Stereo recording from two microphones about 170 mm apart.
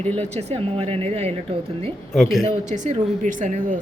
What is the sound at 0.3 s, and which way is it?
Speech, 35° right (ahead or behind).